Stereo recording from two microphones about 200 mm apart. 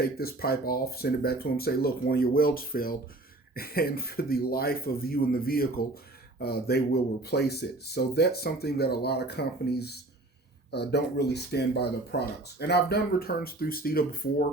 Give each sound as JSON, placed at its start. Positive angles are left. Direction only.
{"t": 0.0, "sound": "speech", "side_deg": 50}